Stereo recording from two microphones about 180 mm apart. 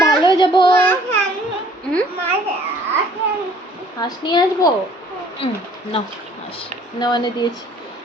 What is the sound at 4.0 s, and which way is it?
Speech, 25° left (ahead or behind).